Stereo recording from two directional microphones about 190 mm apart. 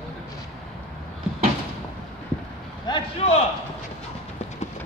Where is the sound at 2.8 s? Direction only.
30° left (ahead or behind).